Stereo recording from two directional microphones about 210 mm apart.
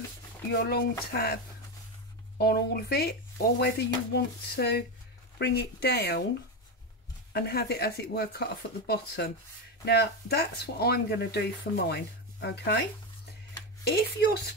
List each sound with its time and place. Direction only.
0.5 s speech: 50° left (ahead or behind)
7.3 s speech: 50° left (ahead or behind)